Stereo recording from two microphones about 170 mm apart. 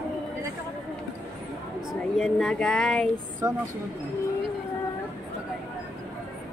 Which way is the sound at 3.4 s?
20° right (ahead or behind).